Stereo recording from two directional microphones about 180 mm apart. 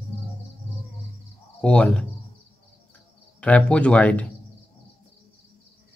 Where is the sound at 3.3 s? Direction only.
5° left (ahead or behind).